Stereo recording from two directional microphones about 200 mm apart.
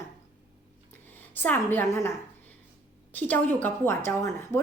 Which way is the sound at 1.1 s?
10° left (ahead or behind).